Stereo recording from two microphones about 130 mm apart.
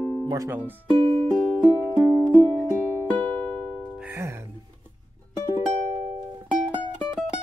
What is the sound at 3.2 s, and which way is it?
Music, 10° left (ahead or behind).